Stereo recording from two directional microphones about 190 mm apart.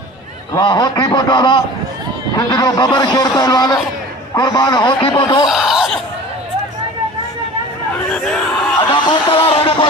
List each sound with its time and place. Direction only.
0.5 s a man's voice: 20° left (ahead or behind)
5.5 s a sound: centre (ahead or behind)
8.1 s speech: 5° left (ahead or behind)
8.9 s speech: 25° left (ahead or behind)